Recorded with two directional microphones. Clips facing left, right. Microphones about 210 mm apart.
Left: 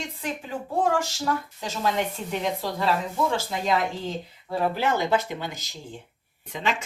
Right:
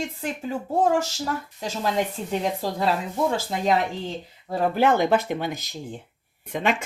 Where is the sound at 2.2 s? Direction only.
35° right (ahead or behind).